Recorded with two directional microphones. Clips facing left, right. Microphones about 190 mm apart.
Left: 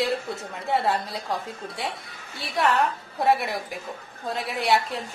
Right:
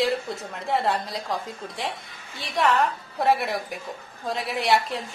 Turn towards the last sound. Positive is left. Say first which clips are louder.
# right 1 dB
turn(degrees=0)  # may be behind; listen again after turning